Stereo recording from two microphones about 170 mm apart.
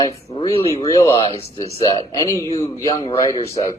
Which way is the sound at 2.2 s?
20° left (ahead or behind).